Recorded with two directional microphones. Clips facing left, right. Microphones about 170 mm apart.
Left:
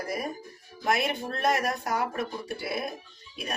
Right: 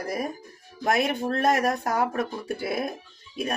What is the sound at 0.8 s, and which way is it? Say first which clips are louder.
Speech: right 4 dB; 50° right (ahead or behind).